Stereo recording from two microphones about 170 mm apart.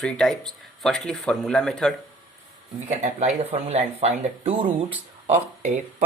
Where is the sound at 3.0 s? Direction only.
40° right (ahead or behind).